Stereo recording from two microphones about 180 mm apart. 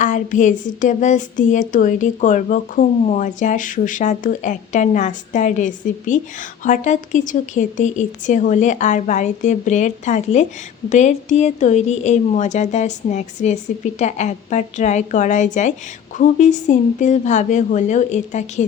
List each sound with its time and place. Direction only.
0.0 s a woman's voice: 45° left (ahead or behind)